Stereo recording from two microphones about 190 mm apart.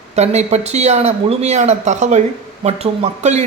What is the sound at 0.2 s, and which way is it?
A man's voice, 35° right (ahead or behind).